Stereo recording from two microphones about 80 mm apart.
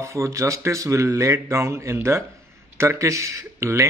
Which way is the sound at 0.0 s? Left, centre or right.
Right.